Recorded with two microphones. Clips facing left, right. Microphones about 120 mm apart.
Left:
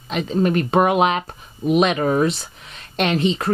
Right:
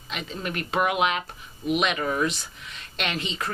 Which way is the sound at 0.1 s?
40° left (ahead or behind).